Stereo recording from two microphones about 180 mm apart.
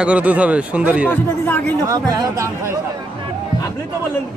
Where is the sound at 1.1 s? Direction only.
10° left (ahead or behind).